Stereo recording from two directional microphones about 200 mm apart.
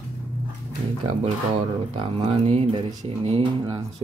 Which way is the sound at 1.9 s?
25° right (ahead or behind).